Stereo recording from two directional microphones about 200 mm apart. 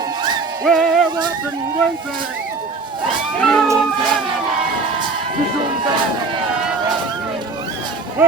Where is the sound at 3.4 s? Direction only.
Centre (ahead or behind).